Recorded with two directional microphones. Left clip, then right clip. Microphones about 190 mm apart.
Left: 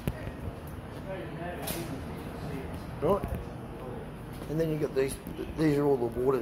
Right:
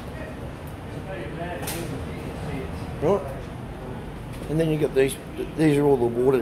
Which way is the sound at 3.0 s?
10° right (ahead or behind).